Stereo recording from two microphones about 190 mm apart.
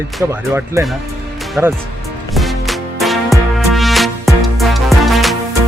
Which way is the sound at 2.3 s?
Centre (ahead or behind).